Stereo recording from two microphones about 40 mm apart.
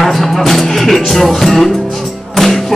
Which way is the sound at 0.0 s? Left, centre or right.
Centre.